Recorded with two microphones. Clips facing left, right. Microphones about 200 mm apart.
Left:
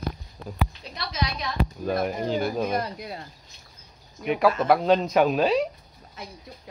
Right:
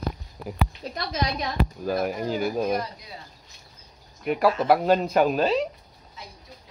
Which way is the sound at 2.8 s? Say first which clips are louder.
Left 4 dB; 60° left (ahead or behind).